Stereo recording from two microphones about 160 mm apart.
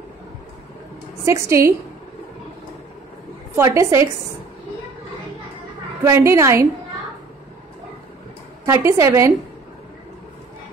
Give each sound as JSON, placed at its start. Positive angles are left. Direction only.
{"t": 1.2, "sound": "a woman's voice", "side_deg": -20}
{"t": 3.5, "sound": "a woman's voice", "side_deg": -15}
{"t": 6.0, "sound": "a woman's voice", "side_deg": -15}
{"t": 8.6, "sound": "a woman's voice", "side_deg": -20}